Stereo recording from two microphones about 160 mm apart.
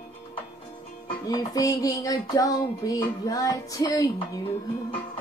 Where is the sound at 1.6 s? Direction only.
20° left (ahead or behind).